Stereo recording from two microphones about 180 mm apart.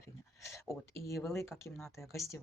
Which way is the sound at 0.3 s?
15° left (ahead or behind).